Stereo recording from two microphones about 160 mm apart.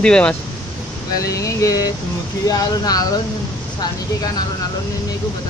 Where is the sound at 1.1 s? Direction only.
20° left (ahead or behind).